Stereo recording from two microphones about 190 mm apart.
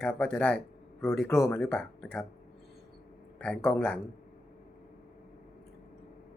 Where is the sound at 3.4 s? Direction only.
5° left (ahead or behind).